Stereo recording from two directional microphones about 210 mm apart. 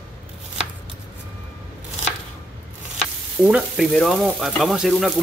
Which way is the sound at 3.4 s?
5° right (ahead or behind).